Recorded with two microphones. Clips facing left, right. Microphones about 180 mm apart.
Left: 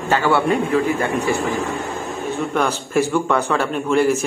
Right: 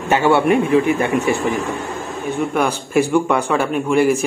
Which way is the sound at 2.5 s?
10° right (ahead or behind).